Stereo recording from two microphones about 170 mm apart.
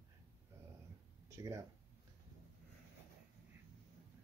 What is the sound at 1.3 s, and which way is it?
Speech, 15° right (ahead or behind).